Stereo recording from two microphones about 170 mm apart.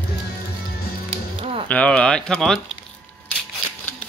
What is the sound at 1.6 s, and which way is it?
Speech, 5° left (ahead or behind).